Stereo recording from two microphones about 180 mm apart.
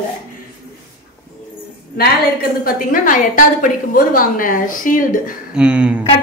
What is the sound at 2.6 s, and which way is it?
A woman's voice, 50° left (ahead or behind).